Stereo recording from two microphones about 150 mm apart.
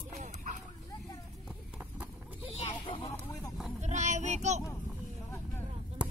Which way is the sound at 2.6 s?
40° left (ahead or behind).